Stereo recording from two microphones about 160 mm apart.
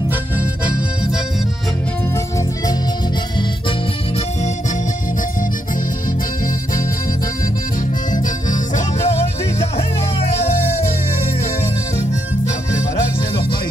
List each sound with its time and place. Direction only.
6.4 s music: 60° left (ahead or behind)
8.1 s music: 50° left (ahead or behind)